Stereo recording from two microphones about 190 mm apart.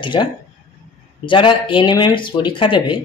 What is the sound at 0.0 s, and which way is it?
A man's voice, 25° left (ahead or behind).